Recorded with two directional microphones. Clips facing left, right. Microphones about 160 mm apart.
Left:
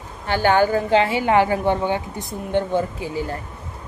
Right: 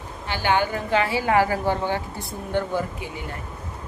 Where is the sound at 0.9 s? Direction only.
25° left (ahead or behind).